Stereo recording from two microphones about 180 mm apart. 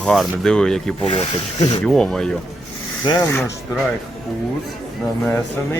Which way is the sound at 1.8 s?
5° left (ahead or behind).